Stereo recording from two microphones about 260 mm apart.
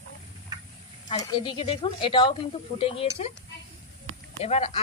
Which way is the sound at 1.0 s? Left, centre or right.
Centre.